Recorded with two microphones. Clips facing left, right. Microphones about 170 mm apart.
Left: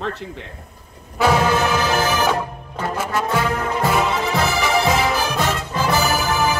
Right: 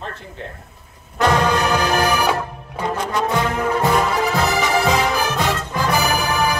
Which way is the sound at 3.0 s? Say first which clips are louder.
Even; 5° left (ahead or behind).